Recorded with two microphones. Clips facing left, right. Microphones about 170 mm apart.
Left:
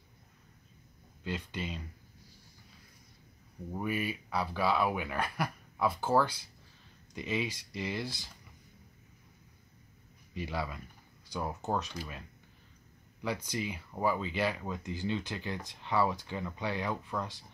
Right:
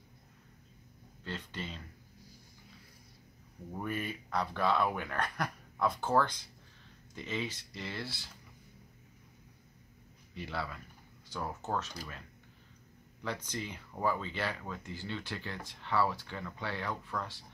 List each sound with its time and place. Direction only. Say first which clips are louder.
1.2 s speech: left 4 dB; 15° left (ahead or behind)
3.7 s speech: left 3 dB; 10° left (ahead or behind)
10.3 s speech: left 3 dB; 15° left (ahead or behind)
13.2 s speech: left 3 dB; 10° left (ahead or behind)